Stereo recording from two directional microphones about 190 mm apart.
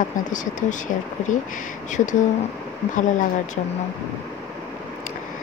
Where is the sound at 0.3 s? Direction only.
40° left (ahead or behind).